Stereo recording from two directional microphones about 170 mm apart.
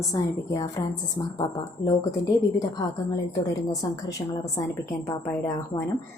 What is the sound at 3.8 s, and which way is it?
Speech, 25° left (ahead or behind).